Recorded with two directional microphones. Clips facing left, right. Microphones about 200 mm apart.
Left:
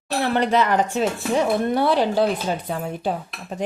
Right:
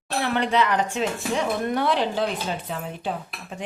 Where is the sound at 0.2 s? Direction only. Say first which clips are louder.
Left 3 dB; 40° left (ahead or behind).